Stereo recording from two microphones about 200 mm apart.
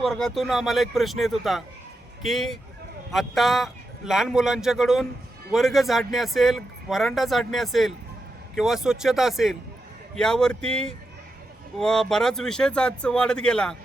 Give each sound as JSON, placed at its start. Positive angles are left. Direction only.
{"t": 0.0, "sound": "speech", "side_deg": 0}